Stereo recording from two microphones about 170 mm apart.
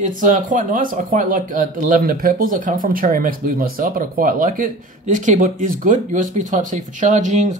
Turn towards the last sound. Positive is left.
turn(degrees=-45)  # may be behind; listen again after turning